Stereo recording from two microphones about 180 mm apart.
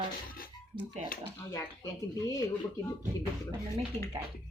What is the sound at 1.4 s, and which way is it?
Speech, 15° left (ahead or behind).